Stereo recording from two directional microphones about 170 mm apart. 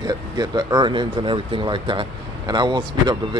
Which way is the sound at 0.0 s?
25° right (ahead or behind).